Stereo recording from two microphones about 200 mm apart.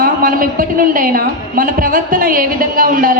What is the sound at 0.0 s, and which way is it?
A man's voice, 45° right (ahead or behind).